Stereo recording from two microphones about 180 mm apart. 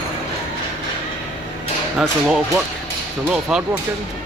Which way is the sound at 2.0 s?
Centre (ahead or behind).